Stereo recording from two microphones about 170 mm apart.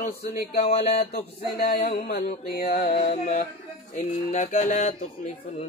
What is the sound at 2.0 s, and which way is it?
Mantra, 65° left (ahead or behind).